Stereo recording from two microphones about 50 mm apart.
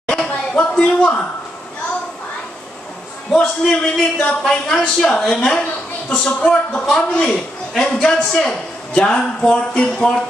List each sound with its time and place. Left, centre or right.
0.1 s a sound: centre
3.3 s a man's voice: centre
4.4 s a man's voice: centre